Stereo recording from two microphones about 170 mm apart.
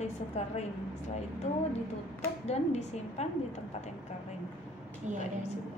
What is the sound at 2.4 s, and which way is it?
Speech, 40° left (ahead or behind).